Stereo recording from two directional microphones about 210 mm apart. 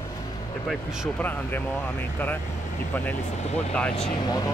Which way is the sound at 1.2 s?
10° left (ahead or behind).